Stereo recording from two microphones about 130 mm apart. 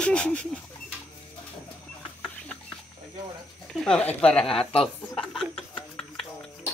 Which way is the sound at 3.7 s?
5° left (ahead or behind).